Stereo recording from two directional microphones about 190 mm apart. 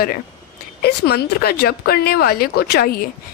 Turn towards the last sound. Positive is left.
turn(degrees=55)  # may be behind; listen again after turning